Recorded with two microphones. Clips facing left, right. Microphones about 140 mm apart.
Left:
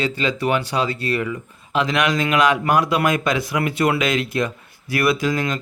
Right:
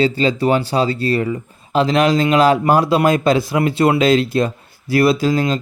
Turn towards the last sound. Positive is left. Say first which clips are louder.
# right 4 dB
turn(degrees=-30)  # may be behind; listen again after turning